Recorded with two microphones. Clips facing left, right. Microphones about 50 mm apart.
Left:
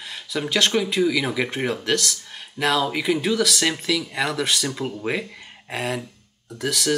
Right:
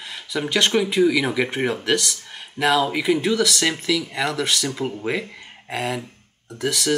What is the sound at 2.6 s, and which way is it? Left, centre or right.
Speech, right.